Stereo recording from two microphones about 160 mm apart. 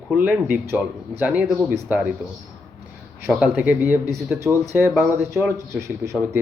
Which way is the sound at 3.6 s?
10° right (ahead or behind).